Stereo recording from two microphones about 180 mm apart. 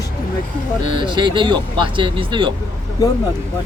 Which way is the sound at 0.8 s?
25° right (ahead or behind).